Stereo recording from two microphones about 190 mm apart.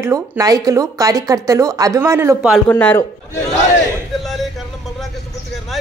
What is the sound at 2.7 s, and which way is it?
Speech, 10° left (ahead or behind).